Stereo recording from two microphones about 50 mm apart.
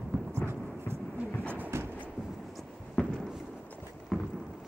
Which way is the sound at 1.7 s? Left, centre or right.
Right.